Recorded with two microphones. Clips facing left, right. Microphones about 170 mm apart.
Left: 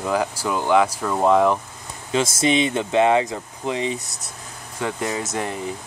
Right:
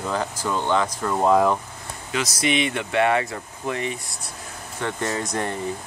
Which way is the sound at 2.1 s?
30° left (ahead or behind).